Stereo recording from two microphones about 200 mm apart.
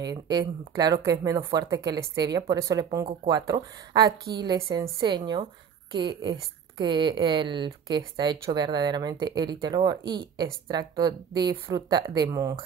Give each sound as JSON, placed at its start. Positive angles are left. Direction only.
{"t": 0.0, "sound": "a woman's voice", "side_deg": -20}